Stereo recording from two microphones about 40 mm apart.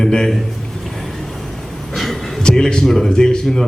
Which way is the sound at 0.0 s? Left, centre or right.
Centre.